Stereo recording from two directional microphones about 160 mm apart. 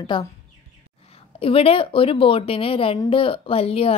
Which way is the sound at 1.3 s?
35° left (ahead or behind).